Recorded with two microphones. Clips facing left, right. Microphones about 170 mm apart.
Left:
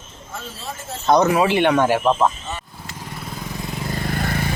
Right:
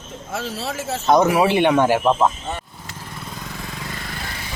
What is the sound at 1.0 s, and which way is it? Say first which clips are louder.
Speech: even; 10° right (ahead or behind).